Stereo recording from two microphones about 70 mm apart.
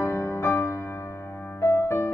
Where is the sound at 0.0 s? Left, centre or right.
Left.